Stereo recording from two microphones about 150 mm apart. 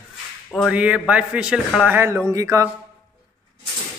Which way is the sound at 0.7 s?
10° right (ahead or behind).